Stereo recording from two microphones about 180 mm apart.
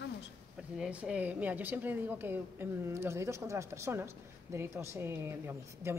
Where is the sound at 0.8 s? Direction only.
5° right (ahead or behind).